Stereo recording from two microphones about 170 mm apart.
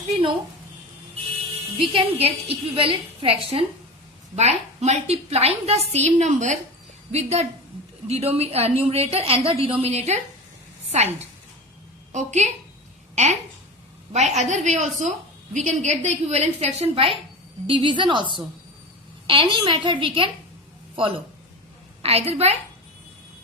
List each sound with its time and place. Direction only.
1.8 s a woman's voice: 30° right (ahead or behind)
12.1 s a woman's voice: 45° right (ahead or behind)
14.1 s a woman's voice: 45° right (ahead or behind)
19.3 s a woman's voice: 30° right (ahead or behind)